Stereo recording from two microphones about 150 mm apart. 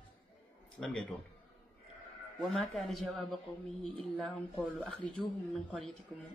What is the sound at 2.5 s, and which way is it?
Speech, centre (ahead or behind).